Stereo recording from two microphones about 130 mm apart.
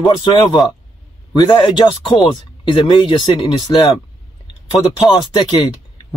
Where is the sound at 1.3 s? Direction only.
35° left (ahead or behind).